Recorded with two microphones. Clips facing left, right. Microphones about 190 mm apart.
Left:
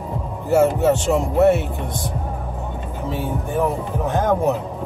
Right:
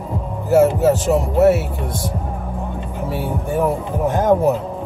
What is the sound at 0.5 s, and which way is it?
Speech, 5° right (ahead or behind).